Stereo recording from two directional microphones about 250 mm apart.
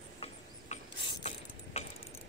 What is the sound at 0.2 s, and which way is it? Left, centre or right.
Pulleys, left.